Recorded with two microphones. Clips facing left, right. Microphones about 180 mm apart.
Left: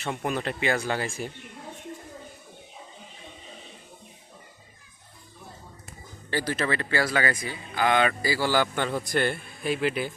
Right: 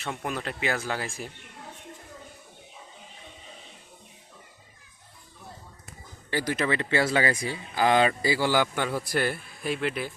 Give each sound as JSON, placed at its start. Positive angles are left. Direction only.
{"t": 0.0, "sound": "speech", "side_deg": 0}
{"t": 6.3, "sound": "speech", "side_deg": -15}